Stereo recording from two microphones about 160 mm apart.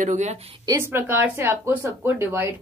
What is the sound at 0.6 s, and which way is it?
Speech, 15° right (ahead or behind).